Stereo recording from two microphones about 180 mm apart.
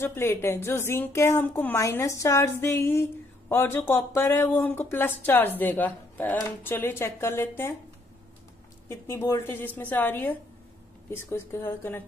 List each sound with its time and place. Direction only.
0.0 s speech: 15° left (ahead or behind)
8.8 s speech: 15° left (ahead or behind)